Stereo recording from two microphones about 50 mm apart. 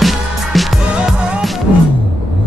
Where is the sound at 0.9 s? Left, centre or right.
Right.